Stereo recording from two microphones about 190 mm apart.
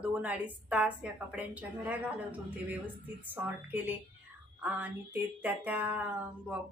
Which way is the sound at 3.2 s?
10° right (ahead or behind).